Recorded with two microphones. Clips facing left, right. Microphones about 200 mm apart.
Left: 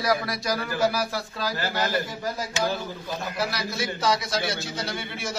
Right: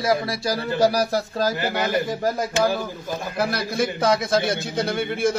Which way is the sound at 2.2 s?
55° right (ahead or behind).